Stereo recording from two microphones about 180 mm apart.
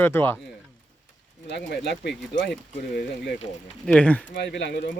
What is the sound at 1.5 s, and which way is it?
Speech, 70° left (ahead or behind).